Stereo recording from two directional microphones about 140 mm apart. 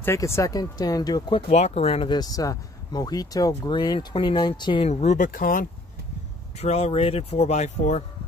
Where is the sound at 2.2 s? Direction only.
25° left (ahead or behind).